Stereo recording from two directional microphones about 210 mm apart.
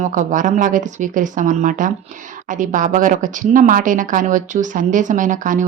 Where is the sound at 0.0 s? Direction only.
35° right (ahead or behind).